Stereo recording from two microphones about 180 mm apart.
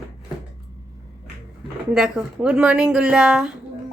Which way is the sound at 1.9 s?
5° right (ahead or behind).